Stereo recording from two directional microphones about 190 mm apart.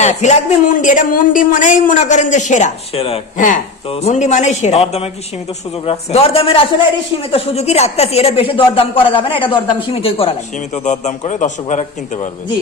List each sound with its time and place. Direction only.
0.0 s speech: 40° left (ahead or behind)
10.8 s speech: 40° left (ahead or behind)